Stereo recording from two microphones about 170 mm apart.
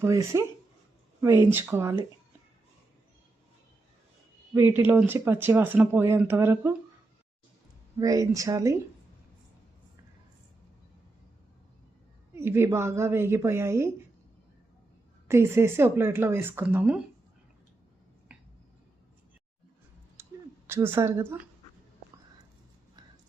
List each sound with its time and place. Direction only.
0.0 s speech: 15° right (ahead or behind)
4.5 s speech: 10° right (ahead or behind)
7.9 s speech: 20° right (ahead or behind)
12.3 s speech: 15° right (ahead or behind)
15.3 s speech: 15° right (ahead or behind)
20.2 s a sound: 15° right (ahead or behind)
20.7 s speech: 15° right (ahead or behind)